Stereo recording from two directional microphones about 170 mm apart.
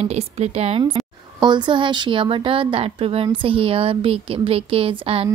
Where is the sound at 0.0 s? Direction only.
40° right (ahead or behind).